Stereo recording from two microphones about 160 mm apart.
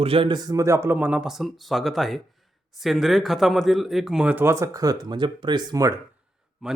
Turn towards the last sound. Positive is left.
turn(degrees=0)  # may be behind; listen again after turning